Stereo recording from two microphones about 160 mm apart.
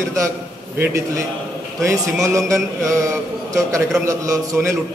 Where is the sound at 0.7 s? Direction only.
15° right (ahead or behind).